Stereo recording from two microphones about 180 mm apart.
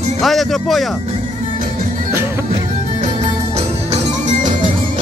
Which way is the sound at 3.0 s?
40° right (ahead or behind).